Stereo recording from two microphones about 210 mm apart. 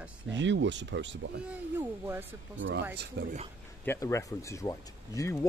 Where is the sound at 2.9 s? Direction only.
50° right (ahead or behind).